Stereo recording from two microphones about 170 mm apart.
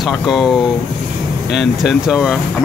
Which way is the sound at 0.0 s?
Centre (ahead or behind).